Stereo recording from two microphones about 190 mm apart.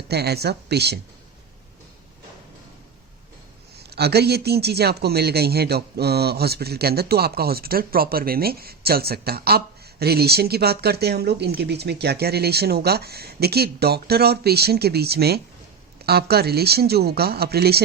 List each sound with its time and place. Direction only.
0.1 s speech: 60° right (ahead or behind)
3.8 s speech: 60° right (ahead or behind)